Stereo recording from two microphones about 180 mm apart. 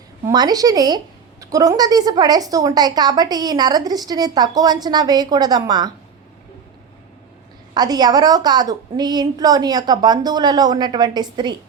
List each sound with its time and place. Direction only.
0.3 s a woman's voice: 20° right (ahead or behind)
7.7 s a woman's voice: 20° right (ahead or behind)